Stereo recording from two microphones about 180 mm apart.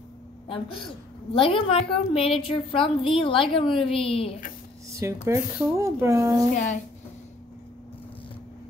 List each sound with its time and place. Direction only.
0.5 s a woman's voice: 30° left (ahead or behind)
4.9 s speech: 15° right (ahead or behind)
6.5 s speech: 45° left (ahead or behind)